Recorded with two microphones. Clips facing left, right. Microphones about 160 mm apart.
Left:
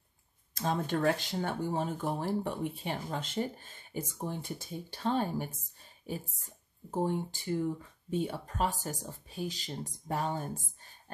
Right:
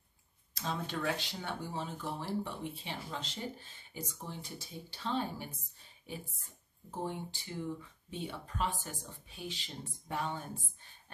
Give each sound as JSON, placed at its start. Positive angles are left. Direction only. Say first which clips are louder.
{"t": 0.6, "sound": "speech", "louder": "left 7 dB", "side_deg": 50}
{"t": 6.9, "sound": "speech", "louder": "left 7 dB", "side_deg": 45}